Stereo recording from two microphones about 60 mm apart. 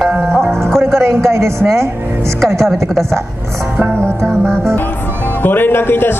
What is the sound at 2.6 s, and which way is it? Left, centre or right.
Speech, centre.